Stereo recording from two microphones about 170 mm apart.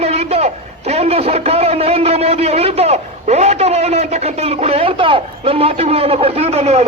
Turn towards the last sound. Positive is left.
turn(degrees=-40)  # may be behind; listen again after turning